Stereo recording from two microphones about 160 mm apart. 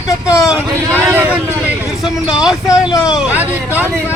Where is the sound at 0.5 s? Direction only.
10° right (ahead or behind).